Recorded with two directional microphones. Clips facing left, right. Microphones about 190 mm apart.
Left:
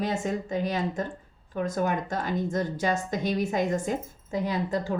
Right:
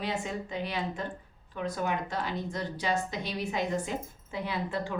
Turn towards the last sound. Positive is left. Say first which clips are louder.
# left 5 dB
turn(degrees=40)  # may be behind; listen again after turning